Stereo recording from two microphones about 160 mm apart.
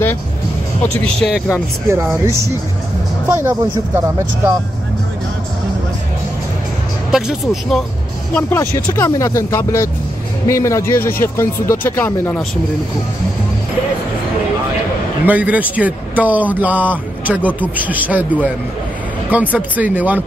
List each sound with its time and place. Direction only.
1.0 s speech: centre (ahead or behind)
1.9 s speech: 15° right (ahead or behind)
7.1 s speech: 5° right (ahead or behind)
8.4 s speech: 15° left (ahead or behind)
15.2 s speech: 10° right (ahead or behind)